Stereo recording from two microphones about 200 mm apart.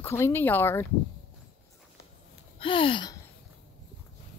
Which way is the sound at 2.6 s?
25° left (ahead or behind).